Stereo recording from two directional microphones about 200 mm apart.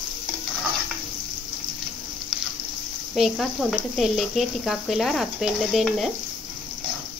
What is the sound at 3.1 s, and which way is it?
Speech, centre (ahead or behind).